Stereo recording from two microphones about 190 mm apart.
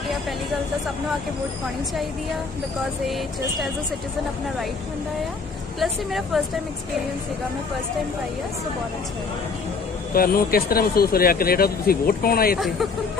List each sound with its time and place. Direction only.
5.8 s speech: centre (ahead or behind)
10.1 s speech: 50° left (ahead or behind)
12.5 s speech: centre (ahead or behind)